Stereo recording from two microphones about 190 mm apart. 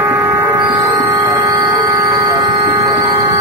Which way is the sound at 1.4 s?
15° right (ahead or behind).